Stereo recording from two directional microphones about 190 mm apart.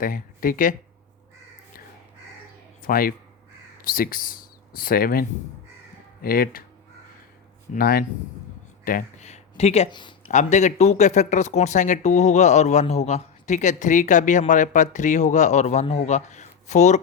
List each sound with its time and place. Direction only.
0.0 s speech: 45° left (ahead or behind)
2.8 s speech: 50° left (ahead or behind)
6.2 s speech: 50° left (ahead or behind)
7.7 s speech: 55° left (ahead or behind); by 10.3 s 25° left (ahead or behind)
10.3 s speech: 40° left (ahead or behind)